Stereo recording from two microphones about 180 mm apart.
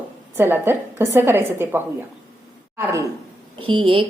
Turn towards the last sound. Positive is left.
turn(degrees=-30)  # may be behind; listen again after turning